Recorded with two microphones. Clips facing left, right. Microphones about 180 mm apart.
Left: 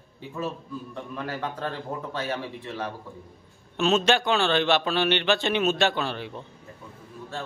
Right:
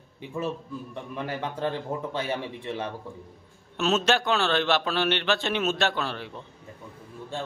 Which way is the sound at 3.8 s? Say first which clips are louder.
Left 2 dB; 5° right (ahead or behind).